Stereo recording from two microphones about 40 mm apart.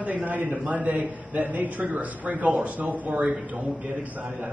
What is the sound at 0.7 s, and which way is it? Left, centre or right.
A man's voice, right.